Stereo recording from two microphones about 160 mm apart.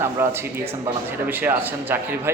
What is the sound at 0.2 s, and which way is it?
Speech, 15° right (ahead or behind).